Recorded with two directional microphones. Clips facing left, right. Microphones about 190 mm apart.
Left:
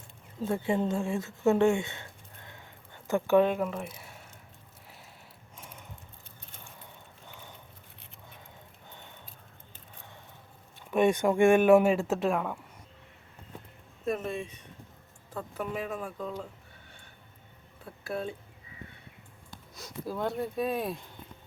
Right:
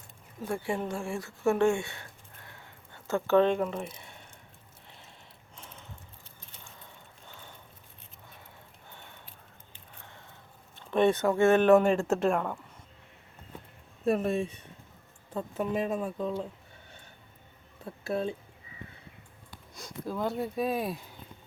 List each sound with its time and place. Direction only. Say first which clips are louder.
0.4 s speech: left 4 dB; 20° left (ahead or behind); by 4.3 s 5° left (ahead or behind)
7.3 s a sound: left 1 dB; 15° left (ahead or behind)
10.8 s speech: even; 10° left (ahead or behind)
14.0 s speech: right 5 dB; 35° right (ahead or behind)
15.3 s speech: right 4 dB; 25° right (ahead or behind)
17.8 s speech: right 4 dB; 25° right (ahead or behind)
19.7 s speech: right 1 dB; 5° left (ahead or behind)